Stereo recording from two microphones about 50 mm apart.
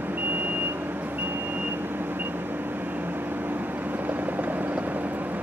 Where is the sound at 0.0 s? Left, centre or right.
Right.